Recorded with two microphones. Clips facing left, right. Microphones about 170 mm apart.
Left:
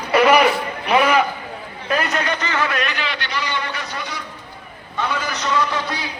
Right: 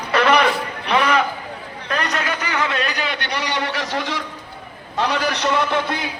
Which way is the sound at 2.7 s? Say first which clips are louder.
Even; 35° right (ahead or behind).